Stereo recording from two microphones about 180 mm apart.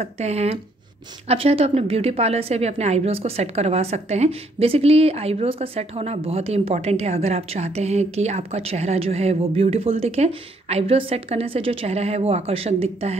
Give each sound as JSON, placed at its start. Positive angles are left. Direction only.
{"t": 0.0, "sound": "a woman's voice", "side_deg": -35}